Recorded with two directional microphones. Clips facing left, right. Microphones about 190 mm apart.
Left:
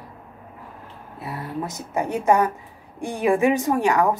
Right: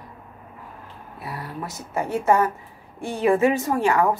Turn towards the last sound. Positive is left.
turn(degrees=15)  # may be behind; listen again after turning